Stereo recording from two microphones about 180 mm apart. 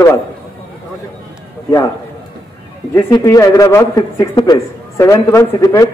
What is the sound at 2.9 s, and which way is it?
Speech, 15° left (ahead or behind).